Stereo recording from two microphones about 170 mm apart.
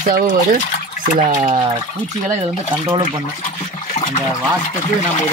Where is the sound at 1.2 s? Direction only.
50° right (ahead or behind).